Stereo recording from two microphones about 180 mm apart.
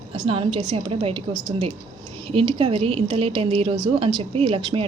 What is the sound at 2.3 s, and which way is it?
A woman's voice, 30° right (ahead or behind).